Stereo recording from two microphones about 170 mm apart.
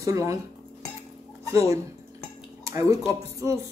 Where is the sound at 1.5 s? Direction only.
20° right (ahead or behind).